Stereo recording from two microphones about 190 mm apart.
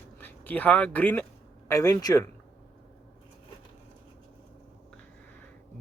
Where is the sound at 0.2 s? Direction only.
10° left (ahead or behind).